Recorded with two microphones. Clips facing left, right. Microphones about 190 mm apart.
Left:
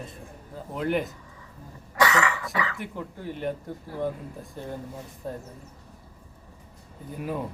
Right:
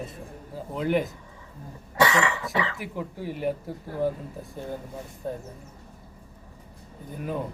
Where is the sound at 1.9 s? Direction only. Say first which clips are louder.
Right 1 dB; 25° right (ahead or behind).